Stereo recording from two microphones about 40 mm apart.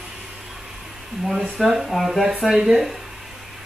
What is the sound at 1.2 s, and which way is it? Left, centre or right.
Speech, centre.